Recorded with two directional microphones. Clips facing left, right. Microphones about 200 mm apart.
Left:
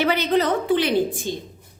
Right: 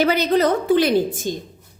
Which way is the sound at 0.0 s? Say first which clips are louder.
Right 3 dB; 40° right (ahead or behind).